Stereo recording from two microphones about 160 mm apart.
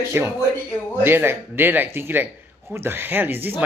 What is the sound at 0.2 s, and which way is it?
Speech, 15° right (ahead or behind).